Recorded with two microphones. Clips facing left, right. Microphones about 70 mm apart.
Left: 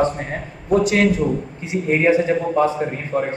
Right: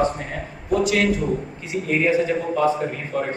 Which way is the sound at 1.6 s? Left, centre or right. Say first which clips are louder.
Left 4 dB; left.